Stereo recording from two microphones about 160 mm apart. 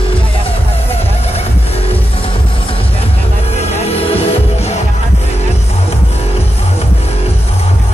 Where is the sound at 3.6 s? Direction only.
40° left (ahead or behind).